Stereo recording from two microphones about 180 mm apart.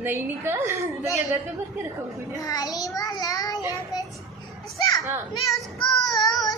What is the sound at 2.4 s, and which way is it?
A child's voice, 20° left (ahead or behind).